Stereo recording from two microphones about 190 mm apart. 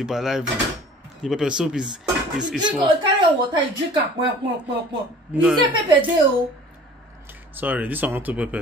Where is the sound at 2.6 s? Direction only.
25° right (ahead or behind).